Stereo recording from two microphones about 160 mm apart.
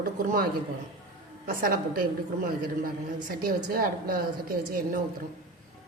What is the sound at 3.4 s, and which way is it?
Speech, 65° right (ahead or behind).